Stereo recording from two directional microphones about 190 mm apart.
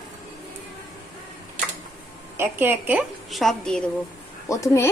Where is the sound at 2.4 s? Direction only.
10° right (ahead or behind).